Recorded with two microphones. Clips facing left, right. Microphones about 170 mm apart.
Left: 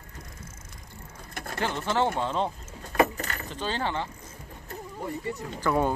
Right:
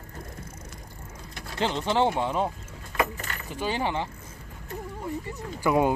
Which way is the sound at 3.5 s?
10° right (ahead or behind).